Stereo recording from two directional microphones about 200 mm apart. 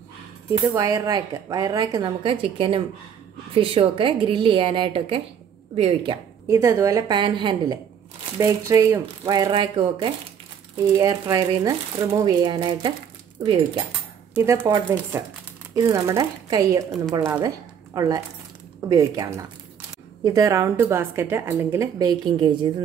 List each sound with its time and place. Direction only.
0.7 s a woman's voice: 15° right (ahead or behind)
6.4 s a woman's voice: 15° right (ahead or behind)
17.9 s a woman's voice: 15° right (ahead or behind)